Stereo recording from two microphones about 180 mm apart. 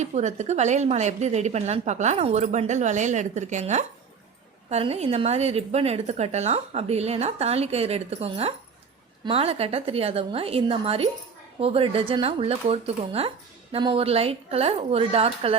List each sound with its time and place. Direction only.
0.0 s a woman's voice: 40° right (ahead or behind)